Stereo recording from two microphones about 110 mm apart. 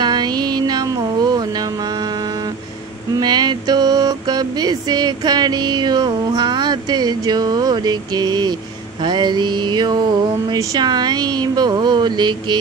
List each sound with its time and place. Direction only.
0.0 s music: 40° right (ahead or behind)
3.2 s a sound: 40° right (ahead or behind)
9.0 s mantra: 45° right (ahead or behind)
10.5 s speech: 35° right (ahead or behind)